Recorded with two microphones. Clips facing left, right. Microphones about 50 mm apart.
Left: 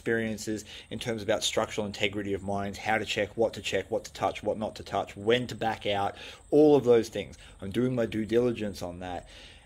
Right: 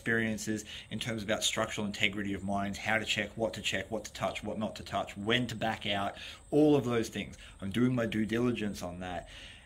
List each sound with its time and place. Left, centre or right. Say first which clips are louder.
0.0 s speech: left 2 dB; right
0.8 s speech: left 6 dB; centre
4.2 s speech: left 6 dB; centre
4.6 s speech: left 3 dB; right
4.9 s speech: left 5 dB; centre
5.7 s speech: left 8 dB; centre
7.7 s speech: left 2 dB; right